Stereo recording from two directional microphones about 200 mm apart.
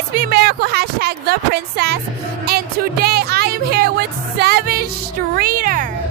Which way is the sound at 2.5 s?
50° right (ahead or behind).